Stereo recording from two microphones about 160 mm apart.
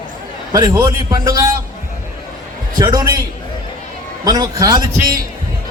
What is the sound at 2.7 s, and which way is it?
Speech, 25° right (ahead or behind).